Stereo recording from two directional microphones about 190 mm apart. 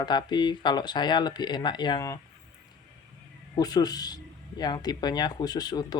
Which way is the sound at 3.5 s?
20° left (ahead or behind).